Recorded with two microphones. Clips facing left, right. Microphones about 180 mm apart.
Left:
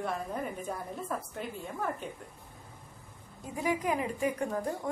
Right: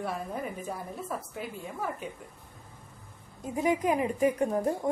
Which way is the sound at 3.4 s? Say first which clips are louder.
Right 4 dB; 20° right (ahead or behind).